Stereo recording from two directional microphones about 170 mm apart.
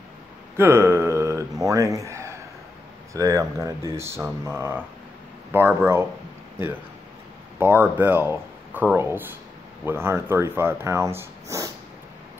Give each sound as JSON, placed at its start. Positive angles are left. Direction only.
{"t": 0.6, "sound": "a sound", "side_deg": -15}
{"t": 1.7, "sound": "speech", "side_deg": -20}
{"t": 7.5, "sound": "speech", "side_deg": -10}